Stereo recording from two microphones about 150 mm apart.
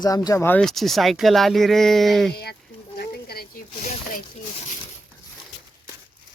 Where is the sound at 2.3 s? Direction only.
90° left.